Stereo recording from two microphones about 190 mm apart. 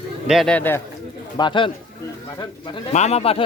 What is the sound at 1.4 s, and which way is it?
Speech, 25° left (ahead or behind).